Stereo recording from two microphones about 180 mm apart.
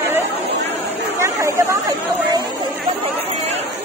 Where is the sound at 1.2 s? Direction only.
15° right (ahead or behind).